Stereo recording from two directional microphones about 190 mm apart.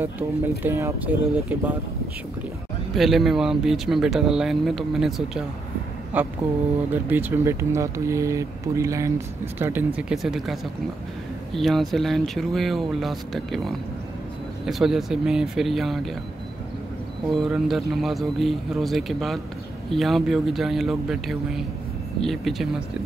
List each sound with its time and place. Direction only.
0.6 s speech: 15° right (ahead or behind)
2.9 s speech: centre (ahead or behind)
17.3 s speech: centre (ahead or behind)